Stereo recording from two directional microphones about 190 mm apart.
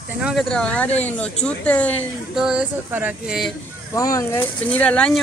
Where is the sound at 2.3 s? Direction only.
5° right (ahead or behind).